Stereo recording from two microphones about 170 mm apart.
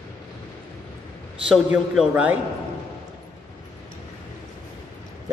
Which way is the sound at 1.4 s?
5° right (ahead or behind).